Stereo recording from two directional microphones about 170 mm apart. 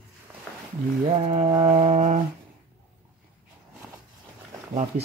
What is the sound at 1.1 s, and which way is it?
Speech, 35° right (ahead or behind).